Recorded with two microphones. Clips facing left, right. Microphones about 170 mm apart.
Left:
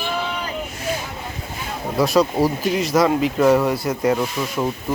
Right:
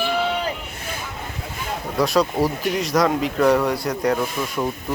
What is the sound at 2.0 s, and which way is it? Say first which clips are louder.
Speech: left 2 dB; centre (ahead or behind).